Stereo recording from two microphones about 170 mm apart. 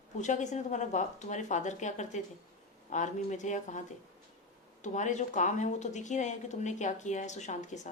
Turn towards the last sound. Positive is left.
turn(degrees=45)  # may be behind; listen again after turning